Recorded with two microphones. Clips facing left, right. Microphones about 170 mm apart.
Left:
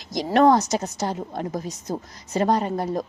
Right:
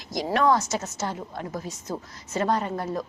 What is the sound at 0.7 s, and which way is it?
A woman's voice, 35° left (ahead or behind).